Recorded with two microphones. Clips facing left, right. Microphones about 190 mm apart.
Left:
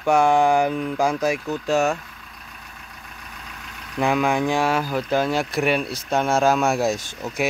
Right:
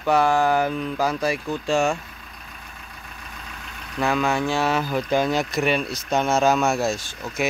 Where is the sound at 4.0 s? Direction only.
15° left (ahead or behind).